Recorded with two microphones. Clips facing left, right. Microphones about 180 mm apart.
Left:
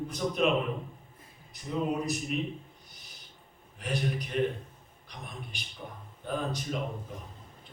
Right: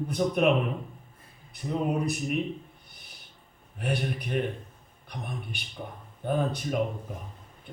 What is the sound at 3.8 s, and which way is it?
A man's voice, 55° right (ahead or behind).